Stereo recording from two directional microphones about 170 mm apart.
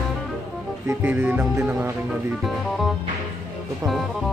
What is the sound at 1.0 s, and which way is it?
Music, 10° right (ahead or behind).